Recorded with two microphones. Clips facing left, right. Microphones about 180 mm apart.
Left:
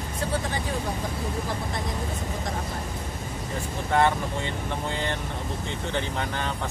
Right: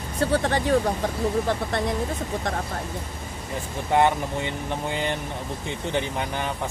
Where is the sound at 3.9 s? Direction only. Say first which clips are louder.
Right 2 dB; 15° right (ahead or behind).